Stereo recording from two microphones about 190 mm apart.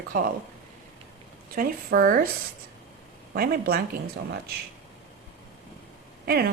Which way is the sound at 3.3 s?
50° right (ahead or behind).